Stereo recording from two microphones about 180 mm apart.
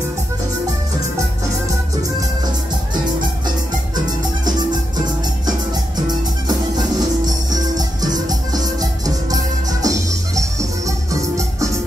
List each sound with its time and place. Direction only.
4.5 s music: 20° right (ahead or behind)
7.5 s music: 20° right (ahead or behind)